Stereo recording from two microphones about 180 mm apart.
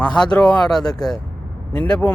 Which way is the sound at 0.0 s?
5° left (ahead or behind).